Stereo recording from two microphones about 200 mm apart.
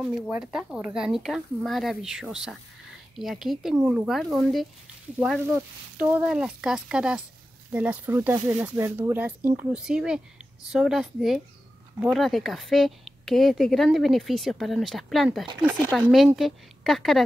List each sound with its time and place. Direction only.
0.0 s speech: 5° right (ahead or behind)